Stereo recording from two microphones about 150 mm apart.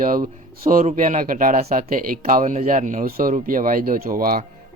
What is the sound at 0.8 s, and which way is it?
Speech, 55° right (ahead or behind).